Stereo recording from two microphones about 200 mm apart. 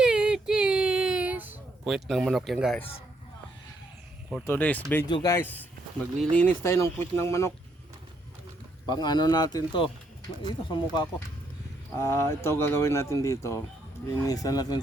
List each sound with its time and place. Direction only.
0.0 s child singing: 5° right (ahead or behind)
4.4 s speech: 10° left (ahead or behind)
5.0 s a man's voice: 20° left (ahead or behind)
8.9 s a man's voice: 20° left (ahead or behind)